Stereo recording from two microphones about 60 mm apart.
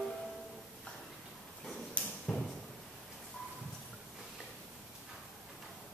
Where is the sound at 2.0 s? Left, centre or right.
Centre.